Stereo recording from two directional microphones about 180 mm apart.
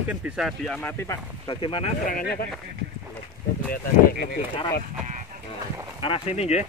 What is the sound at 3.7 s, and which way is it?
Speech, 55° left (ahead or behind).